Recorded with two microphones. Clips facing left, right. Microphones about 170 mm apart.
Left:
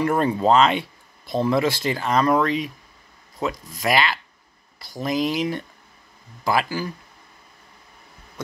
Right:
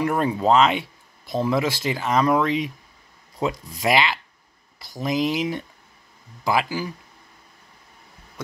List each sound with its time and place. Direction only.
0.0 s speech: 5° right (ahead or behind)
3.3 s speech: 25° right (ahead or behind)